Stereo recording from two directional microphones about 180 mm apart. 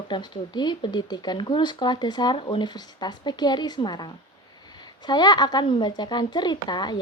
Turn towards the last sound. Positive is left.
turn(degrees=25)  # may be behind; listen again after turning